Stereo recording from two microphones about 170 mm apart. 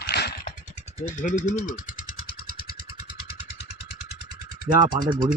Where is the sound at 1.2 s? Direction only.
50° left (ahead or behind).